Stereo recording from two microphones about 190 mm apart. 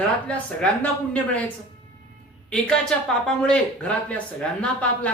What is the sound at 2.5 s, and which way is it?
Speech, 5° left (ahead or behind).